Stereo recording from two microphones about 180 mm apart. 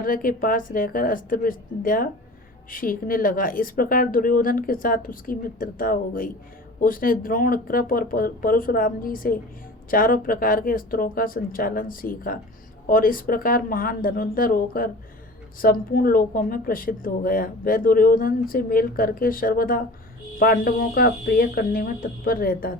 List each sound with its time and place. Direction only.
0.0 s speech: 50° left (ahead or behind)